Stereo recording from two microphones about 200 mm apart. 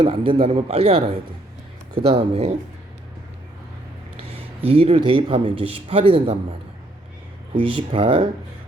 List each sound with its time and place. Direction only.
0.0 s speech: 25° right (ahead or behind)
4.2 s a man's voice: 30° right (ahead or behind)
7.5 s speech: 25° right (ahead or behind)